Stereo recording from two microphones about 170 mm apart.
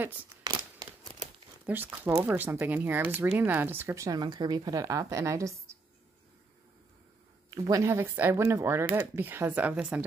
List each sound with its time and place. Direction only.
0.5 s a sound: 25° right (ahead or behind)
1.7 s speech: 10° right (ahead or behind)
7.6 s speech: 20° right (ahead or behind)